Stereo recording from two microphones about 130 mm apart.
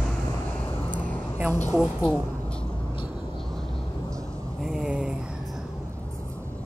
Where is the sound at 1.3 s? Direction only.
20° right (ahead or behind).